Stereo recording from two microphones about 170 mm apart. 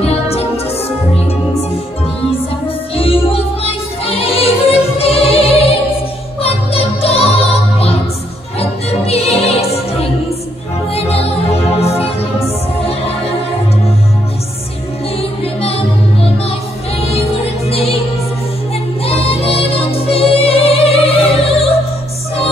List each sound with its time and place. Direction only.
0.0 s music: 35° left (ahead or behind)
3.0 s music: 35° left (ahead or behind)
17.6 s music: 35° left (ahead or behind)
19.0 s music: 35° left (ahead or behind)